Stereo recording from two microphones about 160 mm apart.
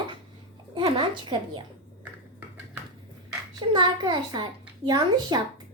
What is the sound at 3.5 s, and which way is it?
A woman's voice, 30° right (ahead or behind).